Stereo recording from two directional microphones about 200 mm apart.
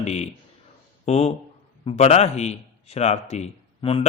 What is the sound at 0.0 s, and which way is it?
A man's voice, 35° left (ahead or behind).